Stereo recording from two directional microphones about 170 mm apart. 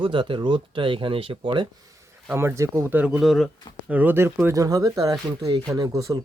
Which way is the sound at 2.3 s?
15° right (ahead or behind).